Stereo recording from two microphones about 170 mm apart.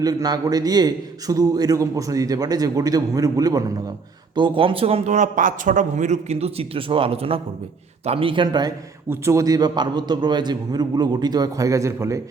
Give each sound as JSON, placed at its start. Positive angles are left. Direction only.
{"t": 0.0, "sound": "a man's voice", "side_deg": -20}